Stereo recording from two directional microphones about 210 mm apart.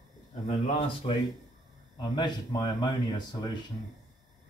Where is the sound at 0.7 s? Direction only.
25° left (ahead or behind).